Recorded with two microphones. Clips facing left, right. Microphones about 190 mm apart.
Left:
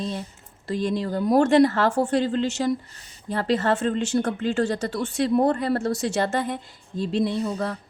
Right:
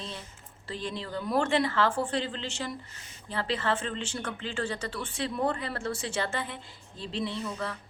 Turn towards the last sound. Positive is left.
turn(degrees=40)  # may be behind; listen again after turning